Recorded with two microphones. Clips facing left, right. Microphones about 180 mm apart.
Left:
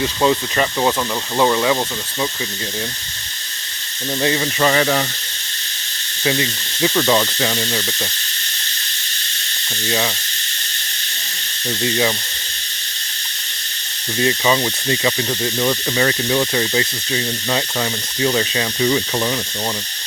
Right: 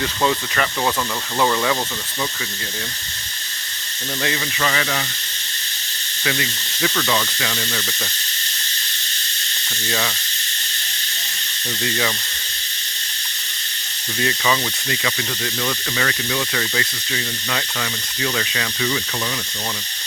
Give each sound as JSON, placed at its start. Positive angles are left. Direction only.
{"t": 0.0, "sound": "speech", "side_deg": 20}
{"t": 4.2, "sound": "speech", "side_deg": 35}
{"t": 6.2, "sound": "speech", "side_deg": 25}
{"t": 11.8, "sound": "speech", "side_deg": 25}
{"t": 14.2, "sound": "speech", "side_deg": 25}